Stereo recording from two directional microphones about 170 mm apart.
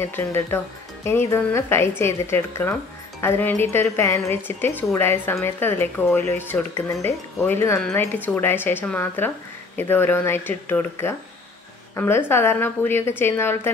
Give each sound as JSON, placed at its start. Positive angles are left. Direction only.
{"t": 0.0, "sound": "speech", "side_deg": 15}